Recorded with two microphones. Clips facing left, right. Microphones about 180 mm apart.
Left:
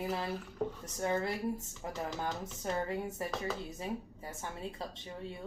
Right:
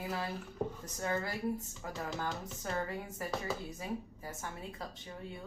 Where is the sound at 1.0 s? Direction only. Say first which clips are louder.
Left 2 dB; 25° left (ahead or behind).